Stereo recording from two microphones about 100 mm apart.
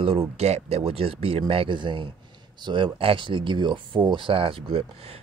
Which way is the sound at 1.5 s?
60° right (ahead or behind).